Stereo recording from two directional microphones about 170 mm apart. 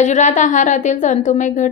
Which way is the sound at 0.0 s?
45° left (ahead or behind).